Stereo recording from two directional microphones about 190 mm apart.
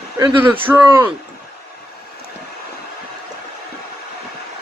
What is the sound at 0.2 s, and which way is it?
Speech, 10° right (ahead or behind).